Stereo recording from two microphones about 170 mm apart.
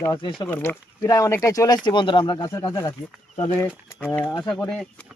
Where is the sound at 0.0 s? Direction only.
25° left (ahead or behind).